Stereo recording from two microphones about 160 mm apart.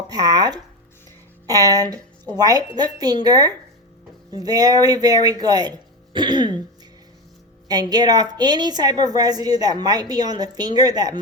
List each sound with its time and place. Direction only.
0.1 s a woman's voice: 25° right (ahead or behind)
7.7 s speech: 25° right (ahead or behind)